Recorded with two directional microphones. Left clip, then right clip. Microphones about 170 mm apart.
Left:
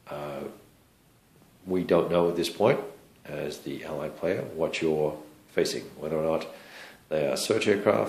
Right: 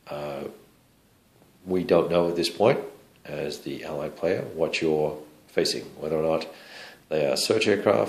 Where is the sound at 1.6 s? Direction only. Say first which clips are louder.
Right 2 dB; 15° right (ahead or behind).